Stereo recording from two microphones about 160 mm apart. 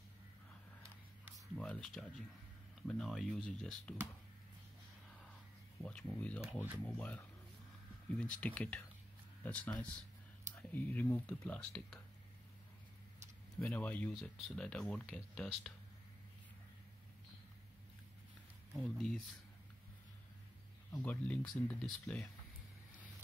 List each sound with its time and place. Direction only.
1.5 s speech: 5° left (ahead or behind)
5.8 s speech: 10° left (ahead or behind)
13.6 s speech: 10° left (ahead or behind)
18.7 s speech: 5° left (ahead or behind)
20.9 s speech: 10° left (ahead or behind)